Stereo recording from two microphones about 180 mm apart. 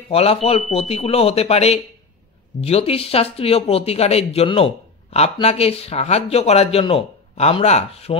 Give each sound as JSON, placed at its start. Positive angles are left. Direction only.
{"t": 0.1, "sound": "speech", "side_deg": 35}